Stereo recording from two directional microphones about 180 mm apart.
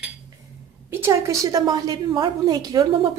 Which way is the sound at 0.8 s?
15° right (ahead or behind).